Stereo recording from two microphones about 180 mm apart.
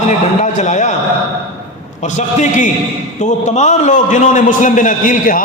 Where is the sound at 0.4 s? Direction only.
40° left (ahead or behind).